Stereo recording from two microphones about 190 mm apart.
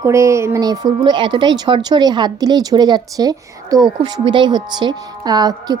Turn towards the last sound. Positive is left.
turn(degrees=-20)  # may be behind; listen again after turning